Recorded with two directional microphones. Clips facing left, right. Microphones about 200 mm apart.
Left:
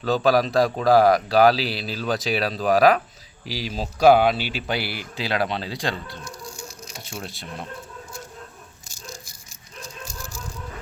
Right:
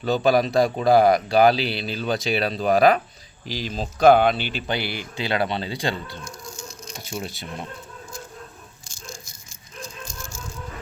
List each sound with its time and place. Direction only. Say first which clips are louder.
0.0 s speech: even; centre (ahead or behind)
10.1 s rattle: left 1 dB; 35° left (ahead or behind)